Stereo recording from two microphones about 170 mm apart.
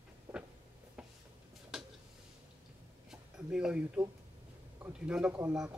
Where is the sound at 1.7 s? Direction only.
Centre (ahead or behind).